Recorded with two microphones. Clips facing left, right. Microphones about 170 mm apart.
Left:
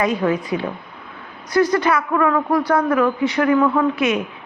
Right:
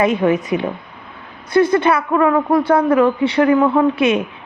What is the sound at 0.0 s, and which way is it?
A woman's voice, 25° right (ahead or behind).